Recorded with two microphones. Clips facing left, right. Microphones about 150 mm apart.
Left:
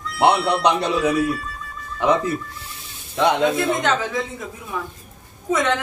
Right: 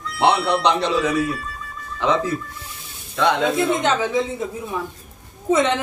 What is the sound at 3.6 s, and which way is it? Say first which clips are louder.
Speech: right 1 dB; 20° right (ahead or behind).